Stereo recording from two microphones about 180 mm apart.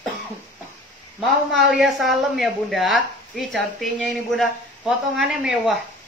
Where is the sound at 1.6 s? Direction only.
5° right (ahead or behind).